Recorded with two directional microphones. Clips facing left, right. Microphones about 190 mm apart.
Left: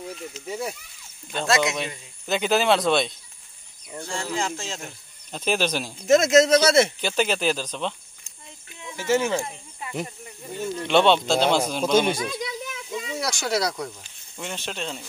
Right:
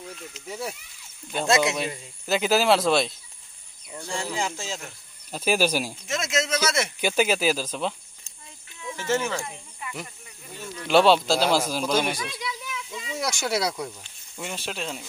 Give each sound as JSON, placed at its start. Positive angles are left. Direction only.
{"t": 0.5, "sound": "speech", "side_deg": 5}
{"t": 1.5, "sound": "speech", "side_deg": -30}
{"t": 2.2, "sound": "speech", "side_deg": -5}
{"t": 4.1, "sound": "speech", "side_deg": -15}
{"t": 6.0, "sound": "speech", "side_deg": 40}
{"t": 7.0, "sound": "speech", "side_deg": -10}
{"t": 8.9, "sound": "speech", "side_deg": 10}
{"t": 10.0, "sound": "speech", "side_deg": 35}
{"t": 10.9, "sound": "speech", "side_deg": -5}
{"t": 11.8, "sound": "speech", "side_deg": 25}
{"t": 12.2, "sound": "a sound", "side_deg": 45}
{"t": 13.2, "sound": "speech", "side_deg": -5}